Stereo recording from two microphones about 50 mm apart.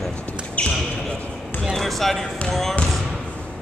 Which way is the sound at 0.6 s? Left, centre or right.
Left.